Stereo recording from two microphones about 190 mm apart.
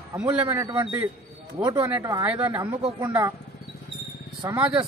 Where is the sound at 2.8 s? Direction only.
30° right (ahead or behind).